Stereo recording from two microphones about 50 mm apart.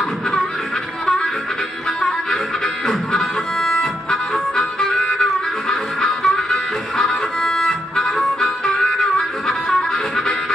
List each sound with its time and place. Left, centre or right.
1.0 s music: centre
2.0 s harmonica: centre